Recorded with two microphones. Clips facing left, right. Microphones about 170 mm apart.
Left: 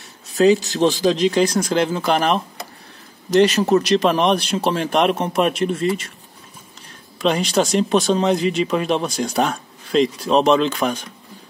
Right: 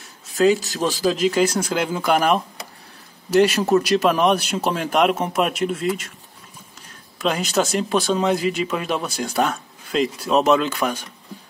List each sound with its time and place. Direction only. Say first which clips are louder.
0.4 s speech: left 3 dB; centre (ahead or behind)
0.7 s a man's voice: left 6 dB; 20° left (ahead or behind)
1.0 s speech: left 2 dB; 5° right (ahead or behind)
7.2 s speech: left 3 dB; 5° right (ahead or behind)